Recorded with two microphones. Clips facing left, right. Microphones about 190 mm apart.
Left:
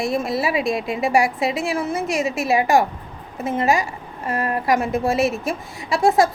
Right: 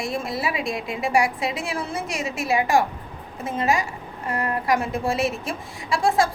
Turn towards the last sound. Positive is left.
turn(degrees=20)  # may be behind; listen again after turning